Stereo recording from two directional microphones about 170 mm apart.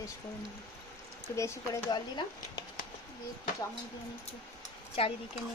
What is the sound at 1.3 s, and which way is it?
Speech, 20° left (ahead or behind).